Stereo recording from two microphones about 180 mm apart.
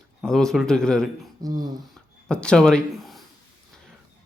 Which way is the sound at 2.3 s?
5° left (ahead or behind).